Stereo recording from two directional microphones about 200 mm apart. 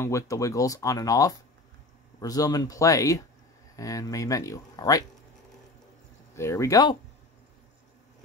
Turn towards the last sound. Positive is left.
turn(degrees=20)  # may be behind; listen again after turning